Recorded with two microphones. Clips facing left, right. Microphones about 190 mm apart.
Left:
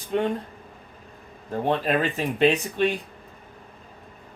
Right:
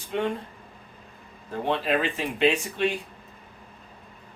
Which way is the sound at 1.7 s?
45° left (ahead or behind).